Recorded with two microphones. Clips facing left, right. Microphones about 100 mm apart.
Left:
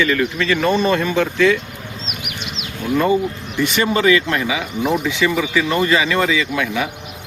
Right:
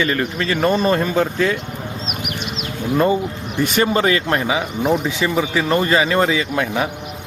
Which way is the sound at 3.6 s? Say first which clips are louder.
Even; 40° right (ahead or behind).